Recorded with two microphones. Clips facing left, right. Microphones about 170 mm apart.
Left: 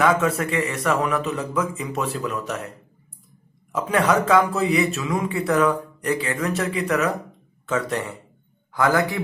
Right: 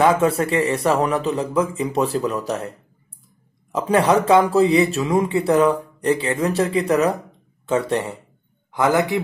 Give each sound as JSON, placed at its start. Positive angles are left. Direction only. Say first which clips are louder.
{"t": 0.0, "sound": "speech", "louder": "right 3 dB", "side_deg": -30}
{"t": 3.7, "sound": "speech", "louder": "right 3 dB", "side_deg": -30}